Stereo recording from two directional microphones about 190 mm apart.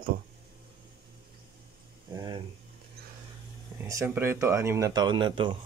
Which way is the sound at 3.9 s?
15° right (ahead or behind).